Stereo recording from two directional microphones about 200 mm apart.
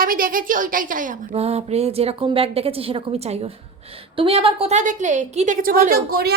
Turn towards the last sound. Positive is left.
turn(degrees=-50)  # may be behind; listen again after turning